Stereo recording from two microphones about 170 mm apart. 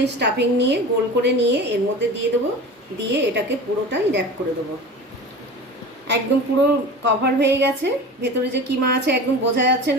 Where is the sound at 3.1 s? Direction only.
90° right.